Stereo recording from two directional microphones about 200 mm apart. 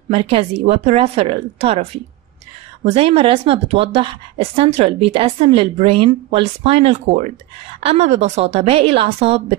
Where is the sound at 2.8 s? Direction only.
30° right (ahead or behind).